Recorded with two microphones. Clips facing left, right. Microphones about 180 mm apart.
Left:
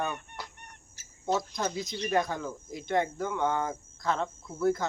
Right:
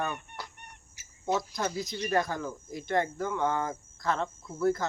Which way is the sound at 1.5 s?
Centre (ahead or behind).